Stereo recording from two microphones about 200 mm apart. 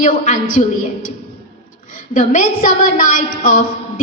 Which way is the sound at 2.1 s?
40° left (ahead or behind).